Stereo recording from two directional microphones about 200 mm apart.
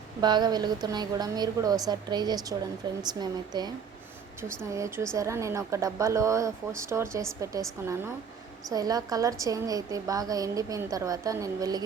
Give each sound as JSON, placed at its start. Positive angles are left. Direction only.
{"t": 0.2, "sound": "a woman's voice", "side_deg": -20}
{"t": 4.7, "sound": "a woman's voice", "side_deg": -15}
{"t": 8.7, "sound": "a woman's voice", "side_deg": -20}